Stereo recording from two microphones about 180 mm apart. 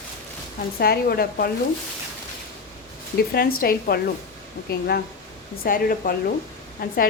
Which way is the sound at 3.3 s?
55° left (ahead or behind).